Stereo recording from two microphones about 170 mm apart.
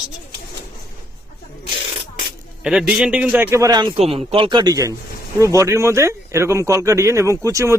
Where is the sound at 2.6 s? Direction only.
5° right (ahead or behind).